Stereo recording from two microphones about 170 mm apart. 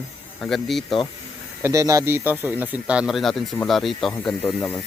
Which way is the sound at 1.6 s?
20° right (ahead or behind).